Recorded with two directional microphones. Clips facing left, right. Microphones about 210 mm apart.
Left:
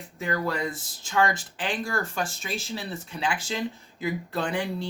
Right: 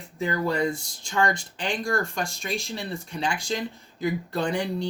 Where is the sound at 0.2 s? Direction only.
Centre (ahead or behind).